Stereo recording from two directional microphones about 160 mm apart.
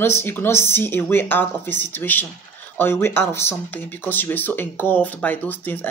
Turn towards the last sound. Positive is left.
turn(degrees=10)  # may be behind; listen again after turning